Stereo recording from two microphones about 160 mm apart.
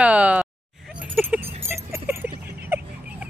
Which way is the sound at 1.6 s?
15° right (ahead or behind).